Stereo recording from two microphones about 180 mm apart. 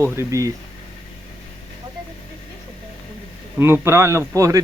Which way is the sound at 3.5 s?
15° right (ahead or behind).